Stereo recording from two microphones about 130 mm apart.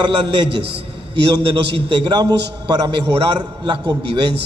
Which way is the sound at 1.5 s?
35° right (ahead or behind).